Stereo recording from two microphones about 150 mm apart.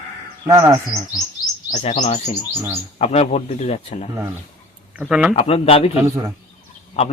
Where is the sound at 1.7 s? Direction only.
50° left (ahead or behind).